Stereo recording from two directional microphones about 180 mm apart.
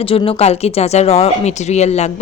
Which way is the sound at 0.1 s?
35° left (ahead or behind).